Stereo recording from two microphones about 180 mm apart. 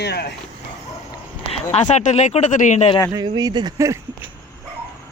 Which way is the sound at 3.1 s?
20° right (ahead or behind).